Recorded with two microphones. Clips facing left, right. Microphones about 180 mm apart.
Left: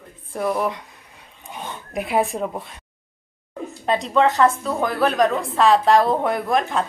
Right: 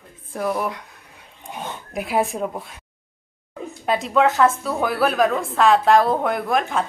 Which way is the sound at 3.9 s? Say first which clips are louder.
Even; 5° right (ahead or behind).